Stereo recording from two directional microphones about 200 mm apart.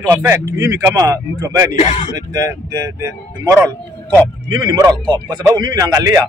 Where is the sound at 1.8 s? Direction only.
35° left (ahead or behind).